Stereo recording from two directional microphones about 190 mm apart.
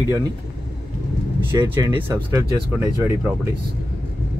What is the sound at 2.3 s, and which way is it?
Speech, 15° right (ahead or behind).